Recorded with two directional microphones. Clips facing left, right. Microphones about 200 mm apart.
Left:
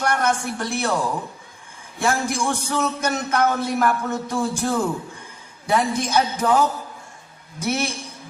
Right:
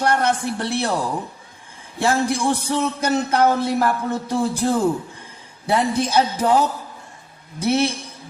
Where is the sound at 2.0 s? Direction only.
30° right (ahead or behind).